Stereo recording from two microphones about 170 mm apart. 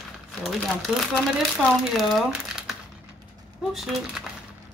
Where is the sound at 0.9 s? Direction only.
5° right (ahead or behind).